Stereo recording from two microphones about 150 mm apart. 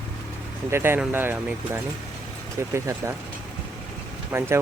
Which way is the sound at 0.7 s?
15° right (ahead or behind).